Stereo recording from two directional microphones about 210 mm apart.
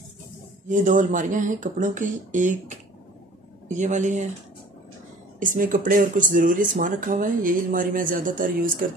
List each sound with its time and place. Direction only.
0.7 s speech: 35° right (ahead or behind)
5.4 s speech: 40° right (ahead or behind)